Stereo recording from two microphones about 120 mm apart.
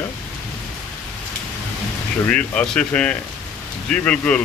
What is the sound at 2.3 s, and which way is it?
Speech, 10° left (ahead or behind).